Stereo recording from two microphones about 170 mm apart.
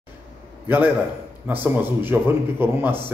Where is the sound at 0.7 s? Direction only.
10° right (ahead or behind).